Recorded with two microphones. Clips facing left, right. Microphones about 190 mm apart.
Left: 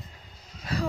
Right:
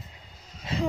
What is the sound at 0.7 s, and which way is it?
Speech, 25° right (ahead or behind).